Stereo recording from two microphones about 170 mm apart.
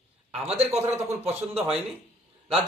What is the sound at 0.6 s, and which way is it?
Speech, 40° right (ahead or behind).